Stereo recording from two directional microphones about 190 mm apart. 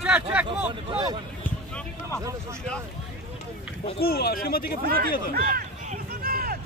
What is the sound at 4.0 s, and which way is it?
Speech, 55° left (ahead or behind).